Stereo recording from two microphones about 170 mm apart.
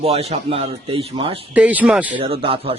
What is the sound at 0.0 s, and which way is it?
A man's voice, 35° right (ahead or behind).